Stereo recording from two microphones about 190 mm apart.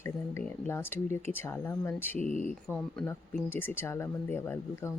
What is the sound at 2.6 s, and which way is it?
Speech, 5° left (ahead or behind).